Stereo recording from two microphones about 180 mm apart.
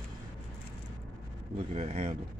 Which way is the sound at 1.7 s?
35° right (ahead or behind).